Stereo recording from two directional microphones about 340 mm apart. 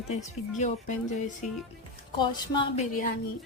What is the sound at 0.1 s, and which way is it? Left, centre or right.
Speech, centre.